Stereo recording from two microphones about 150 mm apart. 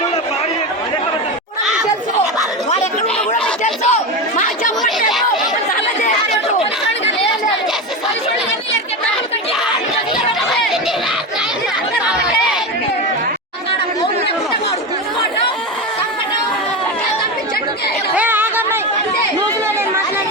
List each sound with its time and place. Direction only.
3.6 s chatter: 55° left (ahead or behind)
4.8 s chatter: centre (ahead or behind)
18.1 s chatter: 10° right (ahead or behind)